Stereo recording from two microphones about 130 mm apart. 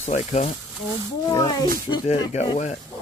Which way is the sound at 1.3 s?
35° left (ahead or behind).